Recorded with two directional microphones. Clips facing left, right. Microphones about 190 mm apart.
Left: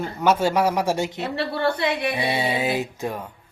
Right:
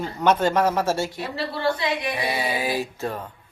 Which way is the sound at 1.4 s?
60° left (ahead or behind).